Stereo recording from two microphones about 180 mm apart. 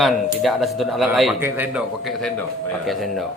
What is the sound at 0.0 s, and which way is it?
Speech, centre (ahead or behind).